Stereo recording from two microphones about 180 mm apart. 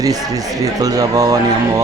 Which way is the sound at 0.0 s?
20° right (ahead or behind).